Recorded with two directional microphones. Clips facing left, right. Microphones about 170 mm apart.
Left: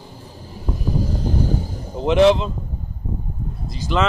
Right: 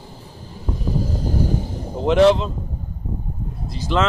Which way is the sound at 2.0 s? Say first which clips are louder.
Even; centre (ahead or behind).